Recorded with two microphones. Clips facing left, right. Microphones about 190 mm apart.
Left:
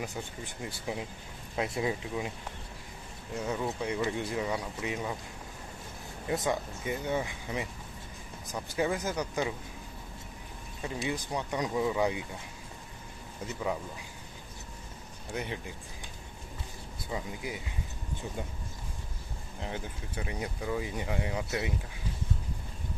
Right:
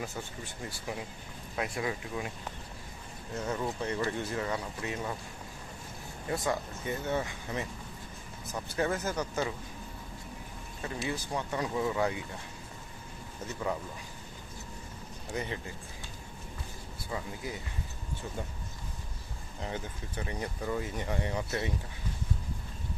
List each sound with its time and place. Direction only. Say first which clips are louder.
1.5 s speech: left 3 dB; 25° left (ahead or behind)
3.3 s speech: left 1 dB; 10° left (ahead or behind)
6.3 s speech: left 1 dB; 20° left (ahead or behind)
10.8 s speech: left 1 dB; 15° left (ahead or behind)
15.3 s speech: even; 5° left (ahead or behind)
17.1 s speech: left 1 dB; 15° left (ahead or behind)
19.7 s speech: even; 10° left (ahead or behind)